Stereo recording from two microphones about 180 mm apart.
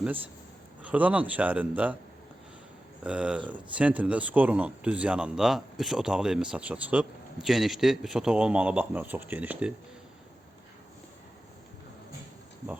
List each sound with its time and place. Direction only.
0.8 s speech: 10° right (ahead or behind)
3.0 s speech: 5° right (ahead or behind)